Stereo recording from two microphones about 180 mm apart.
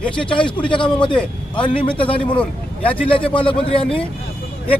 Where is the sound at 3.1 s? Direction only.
30° left (ahead or behind).